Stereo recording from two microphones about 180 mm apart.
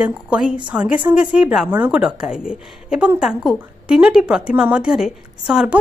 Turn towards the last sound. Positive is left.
turn(degrees=-5)  # may be behind; listen again after turning